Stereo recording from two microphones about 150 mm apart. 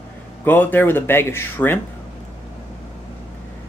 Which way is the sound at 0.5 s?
10° left (ahead or behind).